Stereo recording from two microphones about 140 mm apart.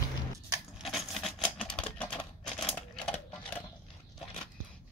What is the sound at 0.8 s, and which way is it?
Typewriter, centre (ahead or behind).